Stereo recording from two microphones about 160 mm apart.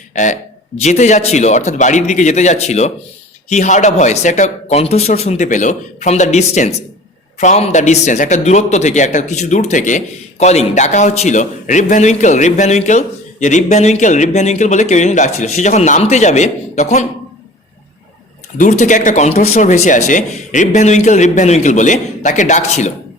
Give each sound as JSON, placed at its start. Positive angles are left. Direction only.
{"t": 0.1, "sound": "a man's voice", "side_deg": 50}
{"t": 18.5, "sound": "a man's voice", "side_deg": 50}